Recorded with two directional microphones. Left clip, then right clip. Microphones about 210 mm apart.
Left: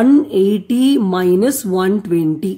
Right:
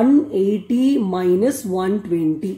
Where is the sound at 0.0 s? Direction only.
40° left (ahead or behind).